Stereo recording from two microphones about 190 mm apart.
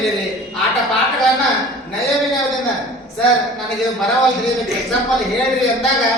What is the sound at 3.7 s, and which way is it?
A man's voice, centre (ahead or behind).